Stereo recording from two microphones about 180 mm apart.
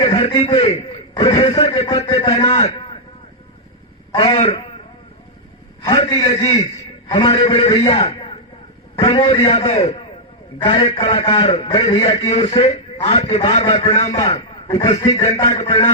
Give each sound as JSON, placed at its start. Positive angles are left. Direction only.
{"t": 0.0, "sound": "a sound", "side_deg": 30}
{"t": 1.1, "sound": "a man's voice", "side_deg": 25}
{"t": 4.1, "sound": "a man's voice", "side_deg": 30}
{"t": 5.8, "sound": "a man's voice", "side_deg": 25}
{"t": 14.3, "sound": "a man's voice", "side_deg": 20}